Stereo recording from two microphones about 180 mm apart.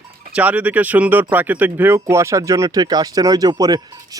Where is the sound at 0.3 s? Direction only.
10° right (ahead or behind).